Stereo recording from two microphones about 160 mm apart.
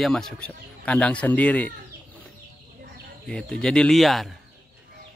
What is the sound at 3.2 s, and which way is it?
Speech, 5° left (ahead or behind).